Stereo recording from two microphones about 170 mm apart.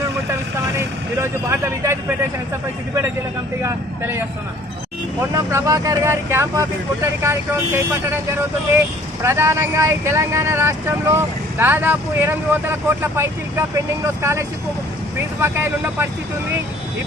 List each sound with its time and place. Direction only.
0.8 s speech: 15° right (ahead or behind)
3.6 s speech: 15° right (ahead or behind)
5.3 s speech: 20° right (ahead or behind)
9.2 s speech: 15° right (ahead or behind)